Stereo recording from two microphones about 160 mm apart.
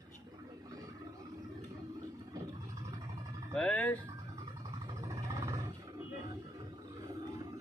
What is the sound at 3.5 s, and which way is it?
Speech, 5° left (ahead or behind).